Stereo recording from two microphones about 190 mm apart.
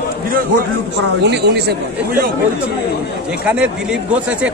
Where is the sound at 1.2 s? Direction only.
60° right (ahead or behind).